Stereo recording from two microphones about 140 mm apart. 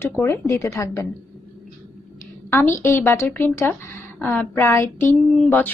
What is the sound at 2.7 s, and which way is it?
A woman's voice, 20° left (ahead or behind).